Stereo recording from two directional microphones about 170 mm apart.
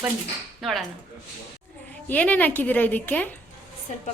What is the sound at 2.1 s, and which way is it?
A woman's voice, 10° left (ahead or behind).